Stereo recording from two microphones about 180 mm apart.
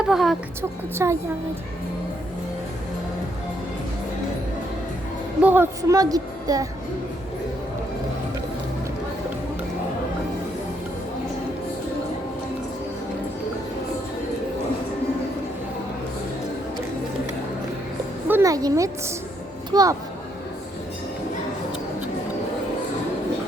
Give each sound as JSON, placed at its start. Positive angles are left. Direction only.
{"t": 0.0, "sound": "a woman's voice", "side_deg": 0}
{"t": 1.0, "sound": "a woman's voice", "side_deg": -15}
{"t": 5.4, "sound": "a woman's voice", "side_deg": -10}
{"t": 18.3, "sound": "a woman's voice", "side_deg": -15}